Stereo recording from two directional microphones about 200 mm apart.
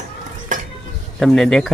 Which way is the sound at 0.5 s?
40° right (ahead or behind).